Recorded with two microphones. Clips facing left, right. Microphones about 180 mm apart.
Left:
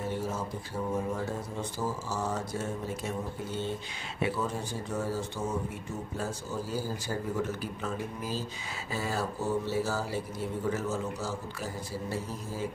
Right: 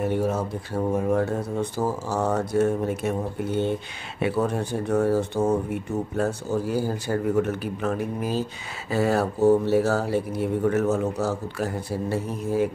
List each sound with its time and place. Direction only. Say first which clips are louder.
0.0 s speech: right 9 dB; 65° right (ahead or behind)